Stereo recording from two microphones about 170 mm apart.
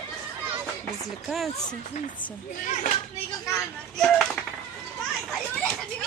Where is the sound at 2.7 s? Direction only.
45° left (ahead or behind).